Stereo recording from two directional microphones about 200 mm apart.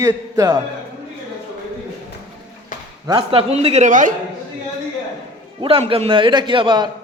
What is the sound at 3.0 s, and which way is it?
A man's voice, 25° right (ahead or behind).